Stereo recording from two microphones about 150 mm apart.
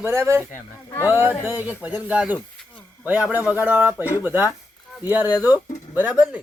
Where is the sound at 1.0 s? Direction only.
10° right (ahead or behind).